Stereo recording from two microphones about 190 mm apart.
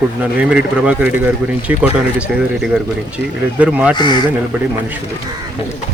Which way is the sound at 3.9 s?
25° left (ahead or behind).